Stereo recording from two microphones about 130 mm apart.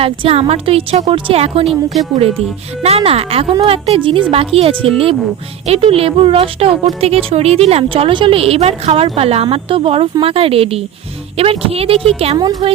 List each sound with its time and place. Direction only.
0.0 s speech: 45° right (ahead or behind)
1.6 s speech: centre (ahead or behind)
2.8 s speech: 50° right (ahead or behind)
12.4 s a woman's voice: 30° right (ahead or behind)